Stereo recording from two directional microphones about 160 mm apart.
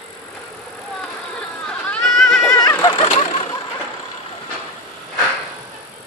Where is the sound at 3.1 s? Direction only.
35° left (ahead or behind).